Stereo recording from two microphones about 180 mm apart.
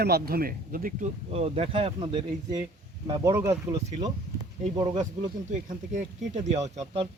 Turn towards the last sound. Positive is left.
turn(degrees=-40)  # may be behind; listen again after turning